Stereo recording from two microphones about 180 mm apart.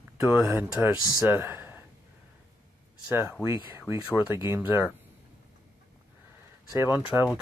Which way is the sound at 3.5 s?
25° left (ahead or behind).